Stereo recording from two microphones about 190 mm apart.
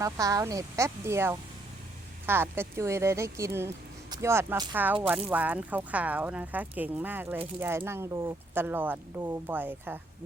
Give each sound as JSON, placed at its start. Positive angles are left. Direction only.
{"t": 0.0, "sound": "speech", "side_deg": -20}